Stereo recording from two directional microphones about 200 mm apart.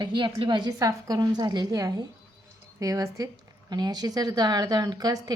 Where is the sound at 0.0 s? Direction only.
25° right (ahead or behind).